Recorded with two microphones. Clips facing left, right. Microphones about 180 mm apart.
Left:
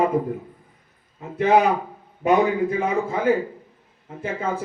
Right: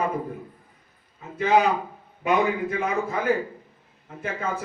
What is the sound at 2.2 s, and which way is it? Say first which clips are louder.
A man's voice: left 4 dB; 35° left (ahead or behind).